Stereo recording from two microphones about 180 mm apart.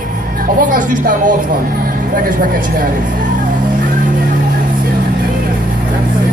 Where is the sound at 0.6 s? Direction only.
50° right (ahead or behind).